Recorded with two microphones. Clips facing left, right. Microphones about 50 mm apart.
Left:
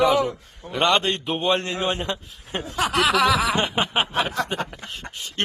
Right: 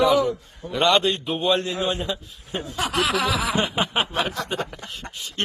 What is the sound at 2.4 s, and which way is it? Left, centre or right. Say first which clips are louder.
Speech: left 4 dB; left.